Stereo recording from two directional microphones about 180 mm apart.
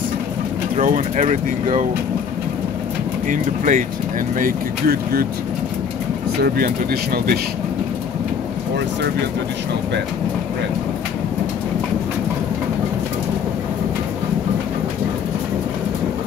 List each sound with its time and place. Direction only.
0.7 s speech: 45° right (ahead or behind)
3.3 s speech: 45° right (ahead or behind)
6.4 s speech: 60° right (ahead or behind)